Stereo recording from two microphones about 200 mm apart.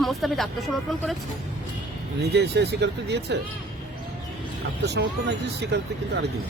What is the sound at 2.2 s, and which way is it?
Speech, 55° right (ahead or behind).